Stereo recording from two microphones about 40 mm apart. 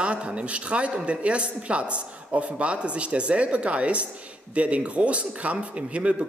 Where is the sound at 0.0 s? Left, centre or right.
Right.